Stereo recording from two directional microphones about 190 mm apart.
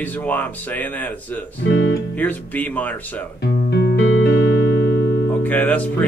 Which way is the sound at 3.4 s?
60° left (ahead or behind).